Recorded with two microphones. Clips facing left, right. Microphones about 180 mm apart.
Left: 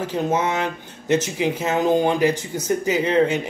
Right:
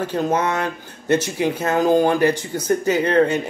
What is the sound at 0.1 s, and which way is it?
Speech, 20° left (ahead or behind).